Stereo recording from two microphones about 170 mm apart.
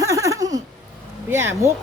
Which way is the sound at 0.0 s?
20° right (ahead or behind).